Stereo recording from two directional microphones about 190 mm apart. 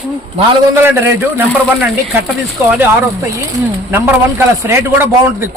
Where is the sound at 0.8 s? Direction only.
15° right (ahead or behind).